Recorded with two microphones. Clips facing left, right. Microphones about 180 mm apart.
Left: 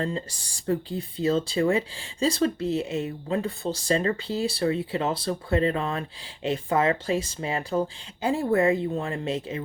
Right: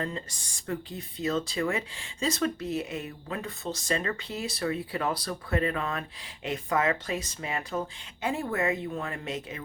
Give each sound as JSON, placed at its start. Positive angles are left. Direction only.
{"t": 0.0, "sound": "speech", "side_deg": 30}